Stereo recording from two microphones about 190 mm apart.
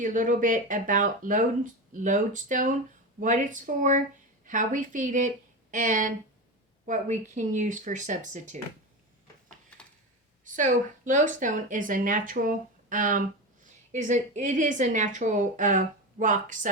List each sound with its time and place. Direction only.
0.0 s speech: 45° right (ahead or behind)
10.4 s speech: 40° right (ahead or behind)